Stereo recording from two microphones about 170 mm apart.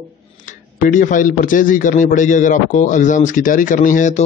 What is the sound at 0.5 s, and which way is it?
A man's voice, 50° left (ahead or behind).